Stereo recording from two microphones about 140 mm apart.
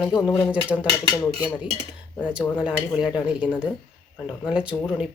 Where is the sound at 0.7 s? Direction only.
10° left (ahead or behind).